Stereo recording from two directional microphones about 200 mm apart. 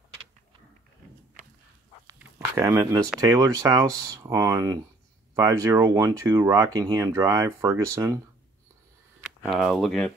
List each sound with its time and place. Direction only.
2.1 s a sound: 15° right (ahead or behind)
3.2 s speech: 20° right (ahead or behind)
9.5 s speech: centre (ahead or behind)